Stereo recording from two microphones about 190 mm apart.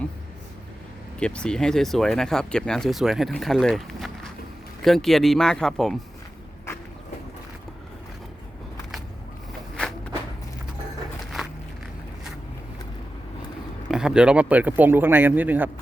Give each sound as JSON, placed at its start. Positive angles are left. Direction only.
{"t": 1.2, "sound": "speech", "side_deg": 5}
{"t": 13.8, "sound": "speech", "side_deg": -5}